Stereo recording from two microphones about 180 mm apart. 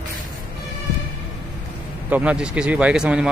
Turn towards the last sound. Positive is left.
turn(degrees=-5)  # may be behind; listen again after turning